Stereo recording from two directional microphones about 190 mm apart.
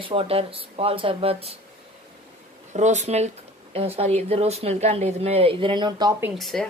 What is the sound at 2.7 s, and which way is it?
Speech, 40° right (ahead or behind).